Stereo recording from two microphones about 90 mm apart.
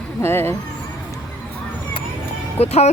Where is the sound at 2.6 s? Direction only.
90° left.